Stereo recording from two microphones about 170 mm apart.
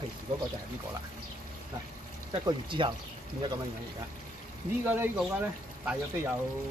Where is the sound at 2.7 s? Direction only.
30° right (ahead or behind).